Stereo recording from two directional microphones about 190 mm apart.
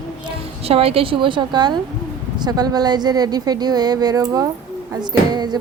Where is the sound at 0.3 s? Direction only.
30° right (ahead or behind).